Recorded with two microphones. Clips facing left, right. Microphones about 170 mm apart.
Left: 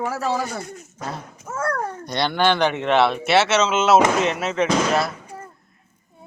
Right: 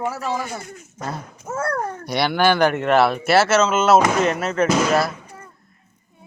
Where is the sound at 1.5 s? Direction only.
25° right (ahead or behind).